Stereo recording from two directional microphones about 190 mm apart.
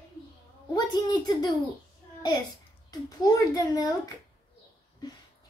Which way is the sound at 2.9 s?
20° left (ahead or behind).